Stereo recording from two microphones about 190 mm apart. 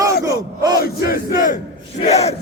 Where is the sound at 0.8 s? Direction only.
50° left (ahead or behind); by 2.4 s 35° left (ahead or behind).